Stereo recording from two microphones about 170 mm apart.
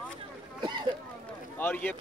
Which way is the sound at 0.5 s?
25° right (ahead or behind).